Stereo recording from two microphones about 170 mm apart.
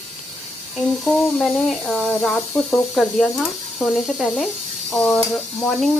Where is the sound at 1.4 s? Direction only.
Centre (ahead or behind).